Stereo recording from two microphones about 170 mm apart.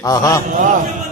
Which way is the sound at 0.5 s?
50° right (ahead or behind).